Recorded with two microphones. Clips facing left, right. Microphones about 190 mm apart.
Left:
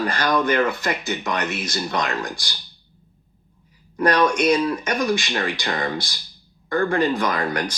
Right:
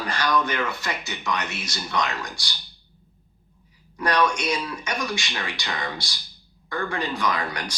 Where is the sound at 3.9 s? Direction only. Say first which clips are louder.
Left 5 dB; 50° left (ahead or behind).